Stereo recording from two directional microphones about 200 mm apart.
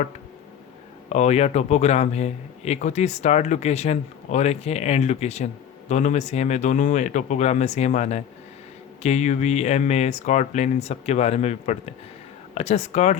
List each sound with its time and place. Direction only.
1.1 s speech: 35° left (ahead or behind)